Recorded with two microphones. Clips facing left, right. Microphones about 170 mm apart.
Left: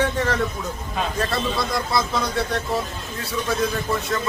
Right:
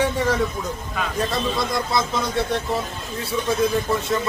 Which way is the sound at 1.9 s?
25° right (ahead or behind).